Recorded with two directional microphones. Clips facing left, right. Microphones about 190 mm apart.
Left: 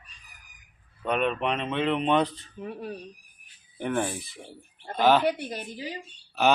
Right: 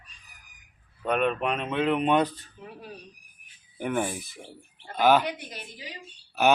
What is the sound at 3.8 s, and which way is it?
Speech, 10° right (ahead or behind).